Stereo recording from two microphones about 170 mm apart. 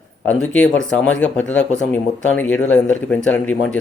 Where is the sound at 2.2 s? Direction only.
10° left (ahead or behind).